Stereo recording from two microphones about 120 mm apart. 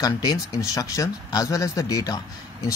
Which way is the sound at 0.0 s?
30° left (ahead or behind).